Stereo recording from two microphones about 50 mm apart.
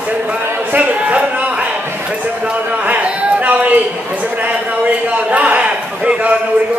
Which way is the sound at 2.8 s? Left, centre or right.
Right.